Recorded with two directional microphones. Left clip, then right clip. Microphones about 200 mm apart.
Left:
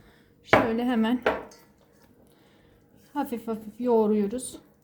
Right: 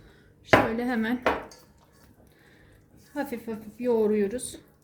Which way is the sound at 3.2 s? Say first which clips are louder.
Left 2 dB; 20° left (ahead or behind).